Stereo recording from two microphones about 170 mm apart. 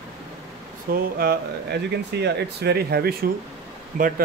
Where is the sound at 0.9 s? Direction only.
65° right (ahead or behind).